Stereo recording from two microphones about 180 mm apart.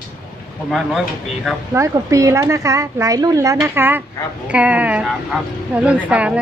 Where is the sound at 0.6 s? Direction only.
Centre (ahead or behind).